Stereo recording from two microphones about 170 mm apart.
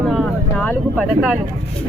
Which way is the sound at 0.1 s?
5° left (ahead or behind).